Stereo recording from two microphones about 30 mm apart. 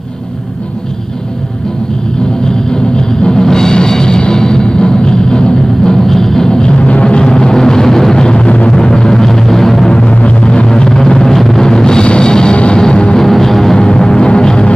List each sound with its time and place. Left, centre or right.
2.7 s music: left
6.0 s music: centre
6.5 s music: left
6.9 s music: left
7.2 s vehicle: left
8.1 s a sound: left
8.7 s music: left
10.4 s a sound: left
10.7 s a sound: centre
11.2 s a sound: centre
11.6 s music: centre
12.0 s music: left
13.1 s music: centre; by 14.7 s left